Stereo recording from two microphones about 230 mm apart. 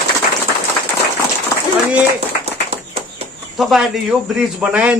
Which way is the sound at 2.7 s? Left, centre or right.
Right.